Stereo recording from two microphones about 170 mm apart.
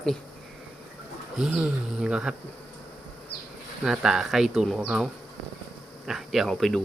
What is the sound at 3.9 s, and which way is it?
Speech, centre (ahead or behind).